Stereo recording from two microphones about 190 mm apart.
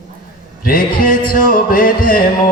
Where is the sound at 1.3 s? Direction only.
50° left (ahead or behind).